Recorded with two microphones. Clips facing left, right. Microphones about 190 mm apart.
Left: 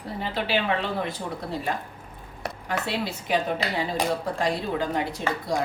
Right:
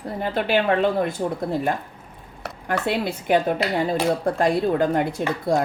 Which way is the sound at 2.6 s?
55° right (ahead or behind).